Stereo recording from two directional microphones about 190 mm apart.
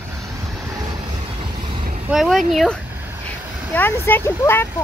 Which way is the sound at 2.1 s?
Centre (ahead or behind).